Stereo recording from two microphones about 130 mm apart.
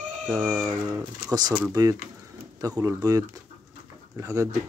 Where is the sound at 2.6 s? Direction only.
25° right (ahead or behind).